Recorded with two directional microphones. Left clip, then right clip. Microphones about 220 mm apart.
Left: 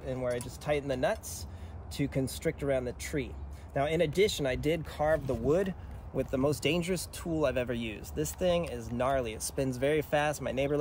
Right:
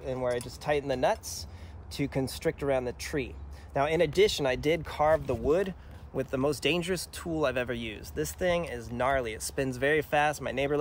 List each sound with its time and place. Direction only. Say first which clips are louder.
0.0 s speech: right 3 dB; 30° right (ahead or behind)
5.4 s speech: right 2 dB; 15° right (ahead or behind)